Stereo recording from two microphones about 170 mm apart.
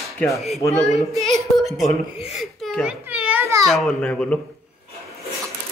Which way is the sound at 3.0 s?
10° right (ahead or behind).